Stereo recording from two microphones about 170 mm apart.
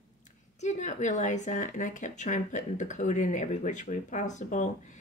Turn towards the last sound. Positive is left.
turn(degrees=45)  # may be behind; listen again after turning